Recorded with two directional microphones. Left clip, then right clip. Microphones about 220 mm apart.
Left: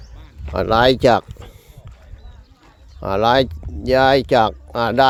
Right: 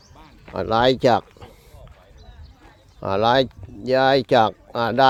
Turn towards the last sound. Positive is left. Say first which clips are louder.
# left 2 dB
turn(degrees=15)  # may be behind; listen again after turning